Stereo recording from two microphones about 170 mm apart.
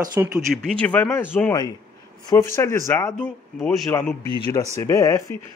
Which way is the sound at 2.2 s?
15° left (ahead or behind).